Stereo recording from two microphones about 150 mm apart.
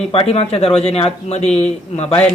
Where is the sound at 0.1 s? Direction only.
40° left (ahead or behind).